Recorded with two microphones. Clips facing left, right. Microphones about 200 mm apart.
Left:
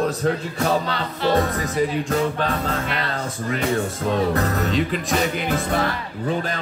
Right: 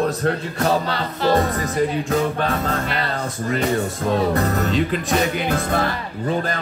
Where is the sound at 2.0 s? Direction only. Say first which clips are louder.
Right 1 dB; 5° right (ahead or behind).